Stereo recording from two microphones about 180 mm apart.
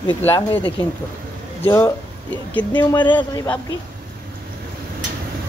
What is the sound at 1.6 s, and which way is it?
Speech, 10° left (ahead or behind).